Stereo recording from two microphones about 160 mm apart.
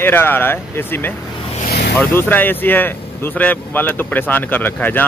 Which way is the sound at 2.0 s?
10° left (ahead or behind).